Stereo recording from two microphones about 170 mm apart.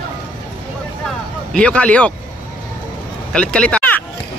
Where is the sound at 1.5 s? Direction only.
5° left (ahead or behind).